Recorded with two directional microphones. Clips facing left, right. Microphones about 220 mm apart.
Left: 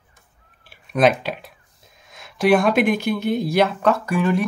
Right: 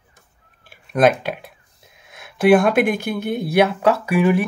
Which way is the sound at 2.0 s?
60° right (ahead or behind).